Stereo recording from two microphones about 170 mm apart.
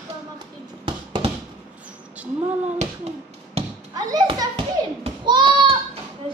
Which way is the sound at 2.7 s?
35° right (ahead or behind).